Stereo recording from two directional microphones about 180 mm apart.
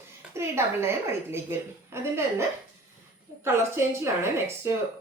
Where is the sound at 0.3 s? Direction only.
15° right (ahead or behind).